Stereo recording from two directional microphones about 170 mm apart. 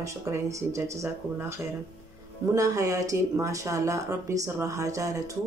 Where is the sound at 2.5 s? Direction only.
20° right (ahead or behind).